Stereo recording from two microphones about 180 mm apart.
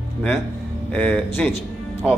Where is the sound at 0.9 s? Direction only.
5° left (ahead or behind).